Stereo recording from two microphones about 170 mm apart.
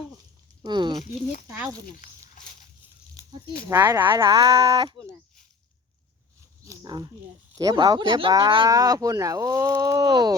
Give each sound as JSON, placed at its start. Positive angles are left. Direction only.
{"t": 0.6, "sound": "speech", "side_deg": -25}
{"t": 1.0, "sound": "speech", "side_deg": 50}
{"t": 3.8, "sound": "speech", "side_deg": -25}
{"t": 6.7, "sound": "speech", "side_deg": -25}